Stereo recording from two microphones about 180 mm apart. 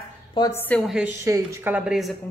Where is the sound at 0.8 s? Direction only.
Centre (ahead or behind).